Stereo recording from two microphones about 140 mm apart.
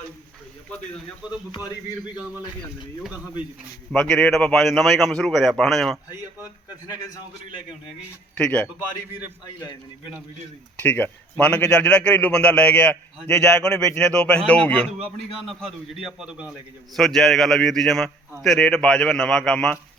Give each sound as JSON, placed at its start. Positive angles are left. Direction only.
{"t": 3.9, "sound": "a man's voice", "side_deg": 10}
{"t": 6.7, "sound": "a man's voice", "side_deg": 25}
{"t": 8.4, "sound": "a man's voice", "side_deg": 10}
{"t": 10.8, "sound": "a man's voice", "side_deg": 10}